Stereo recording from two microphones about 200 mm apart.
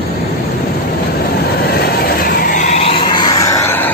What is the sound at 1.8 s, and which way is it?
Vehicle, 50° left (ahead or behind).